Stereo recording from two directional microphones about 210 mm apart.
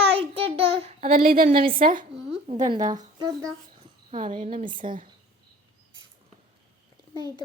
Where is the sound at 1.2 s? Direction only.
45° right (ahead or behind).